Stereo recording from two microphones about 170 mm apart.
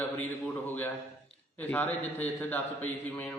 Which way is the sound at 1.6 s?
10° left (ahead or behind).